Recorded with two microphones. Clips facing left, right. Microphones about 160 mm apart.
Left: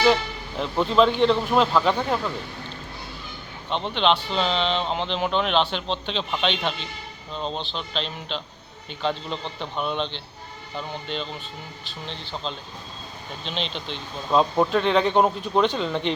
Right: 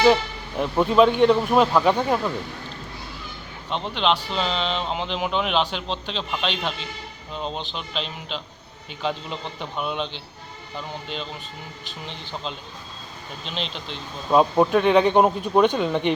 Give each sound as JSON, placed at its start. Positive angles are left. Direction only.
{"t": 0.0, "sound": "speech", "side_deg": -10}
{"t": 3.7, "sound": "speech", "side_deg": -5}
{"t": 13.4, "sound": "speech", "side_deg": 0}